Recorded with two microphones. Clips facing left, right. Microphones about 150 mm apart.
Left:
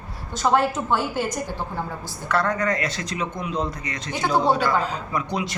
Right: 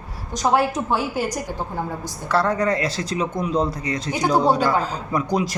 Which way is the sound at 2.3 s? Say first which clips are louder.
Right 3 dB; 30° right (ahead or behind).